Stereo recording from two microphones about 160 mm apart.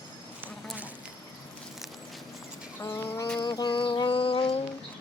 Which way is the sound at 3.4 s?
25° left (ahead or behind).